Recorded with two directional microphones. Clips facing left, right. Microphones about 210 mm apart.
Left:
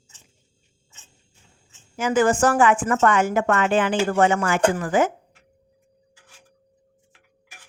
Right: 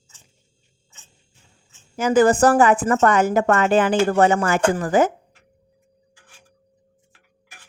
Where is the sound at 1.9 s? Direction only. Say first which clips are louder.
Right 4 dB; 40° right (ahead or behind).